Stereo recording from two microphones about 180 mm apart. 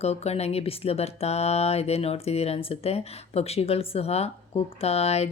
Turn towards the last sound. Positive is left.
turn(degrees=35)  # may be behind; listen again after turning